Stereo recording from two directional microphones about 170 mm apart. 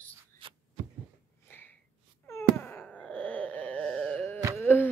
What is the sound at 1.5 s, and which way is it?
Snort, 10° left (ahead or behind).